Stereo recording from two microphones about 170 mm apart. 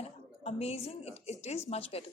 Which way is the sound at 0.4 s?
40° left (ahead or behind).